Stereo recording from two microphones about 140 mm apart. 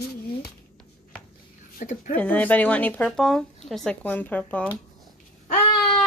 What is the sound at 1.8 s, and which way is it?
Speech, 70° left (ahead or behind).